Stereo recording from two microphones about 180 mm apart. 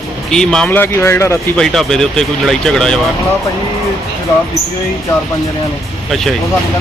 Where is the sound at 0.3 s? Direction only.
5° left (ahead or behind).